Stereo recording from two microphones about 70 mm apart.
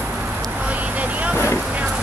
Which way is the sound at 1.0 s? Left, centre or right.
Right.